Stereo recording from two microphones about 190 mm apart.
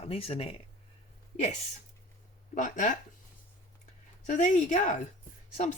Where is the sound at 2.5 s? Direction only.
40° left (ahead or behind).